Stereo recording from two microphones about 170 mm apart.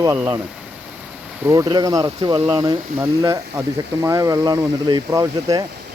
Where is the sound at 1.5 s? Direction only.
20° right (ahead or behind).